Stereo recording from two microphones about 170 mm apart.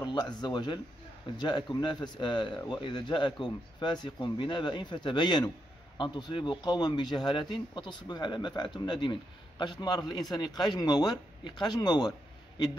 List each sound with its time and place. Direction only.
0.0 s speech: 25° left (ahead or behind)